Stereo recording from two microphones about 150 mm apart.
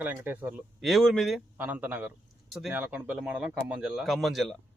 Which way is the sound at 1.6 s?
10° right (ahead or behind).